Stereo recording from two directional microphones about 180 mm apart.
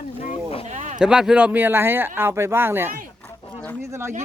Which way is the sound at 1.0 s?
5° right (ahead or behind).